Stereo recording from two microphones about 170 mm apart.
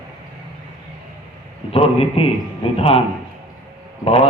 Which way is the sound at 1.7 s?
35° left (ahead or behind).